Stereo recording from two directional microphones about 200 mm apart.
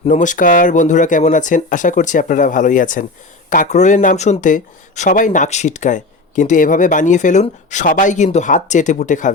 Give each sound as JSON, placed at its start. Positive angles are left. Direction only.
{"t": 0.0, "sound": "speech", "side_deg": 40}